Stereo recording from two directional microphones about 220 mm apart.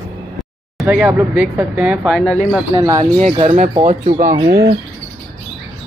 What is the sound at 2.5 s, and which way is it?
Speech, 15° right (ahead or behind).